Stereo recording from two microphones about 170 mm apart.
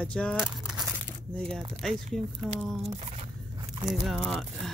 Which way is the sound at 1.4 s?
30° right (ahead or behind).